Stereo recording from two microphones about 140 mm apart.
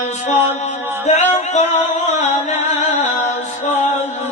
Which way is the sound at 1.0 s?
55° left (ahead or behind).